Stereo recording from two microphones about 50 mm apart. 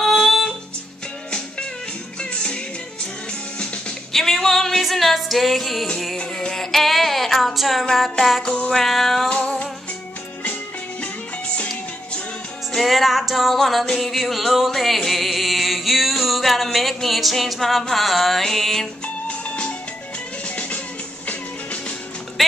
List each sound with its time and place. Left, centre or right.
0.1 s music: centre
2.3 s music: left
4.1 s music: centre
6.5 s a sound: centre
7.9 s music: centre
11.0 s music: left
12.7 s music: centre
19.2 s music: centre
22.4 s music: centre